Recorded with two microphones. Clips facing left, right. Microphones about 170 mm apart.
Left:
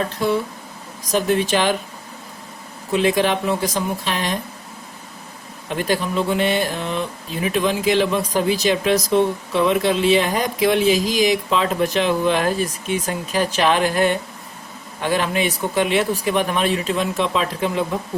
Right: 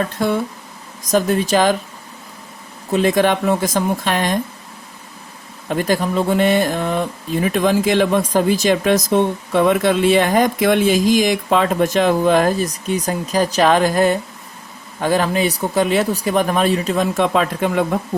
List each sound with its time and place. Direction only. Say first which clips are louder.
1.0 s speech: right 2 dB; 45° right (ahead or behind)
2.9 s speech: right 3 dB; 45° right (ahead or behind)
5.6 s speech: right 3 dB; 40° right (ahead or behind)